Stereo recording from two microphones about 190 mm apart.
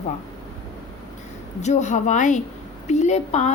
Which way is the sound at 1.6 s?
40° left (ahead or behind).